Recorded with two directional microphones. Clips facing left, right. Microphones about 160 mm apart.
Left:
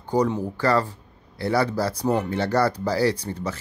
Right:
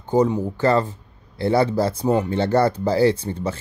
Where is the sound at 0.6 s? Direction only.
20° right (ahead or behind).